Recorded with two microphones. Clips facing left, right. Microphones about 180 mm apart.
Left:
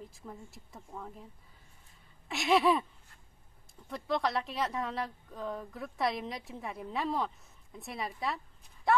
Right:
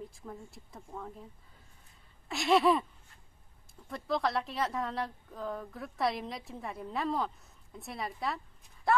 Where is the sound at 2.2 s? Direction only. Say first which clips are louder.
Right 1 dB; centre (ahead or behind).